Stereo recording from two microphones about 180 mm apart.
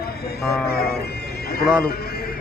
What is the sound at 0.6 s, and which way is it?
Speech, 60° left (ahead or behind).